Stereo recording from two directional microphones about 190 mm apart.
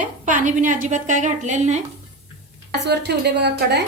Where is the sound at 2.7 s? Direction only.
60° right (ahead or behind).